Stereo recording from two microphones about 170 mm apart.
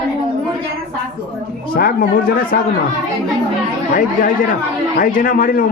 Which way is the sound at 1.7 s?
60° left (ahead or behind).